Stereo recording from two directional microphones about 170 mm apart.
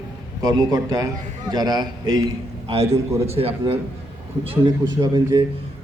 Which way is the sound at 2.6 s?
35° right (ahead or behind).